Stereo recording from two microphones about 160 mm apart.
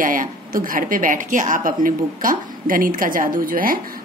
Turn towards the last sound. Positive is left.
turn(degrees=-60)  # may be behind; listen again after turning